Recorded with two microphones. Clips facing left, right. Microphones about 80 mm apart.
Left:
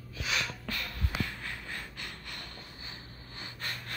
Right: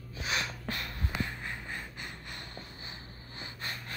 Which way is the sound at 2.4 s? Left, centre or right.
Right.